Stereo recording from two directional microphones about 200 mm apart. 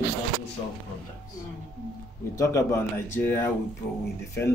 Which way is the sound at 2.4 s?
15° left (ahead or behind).